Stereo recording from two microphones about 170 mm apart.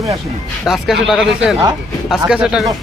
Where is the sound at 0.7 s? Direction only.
Centre (ahead or behind).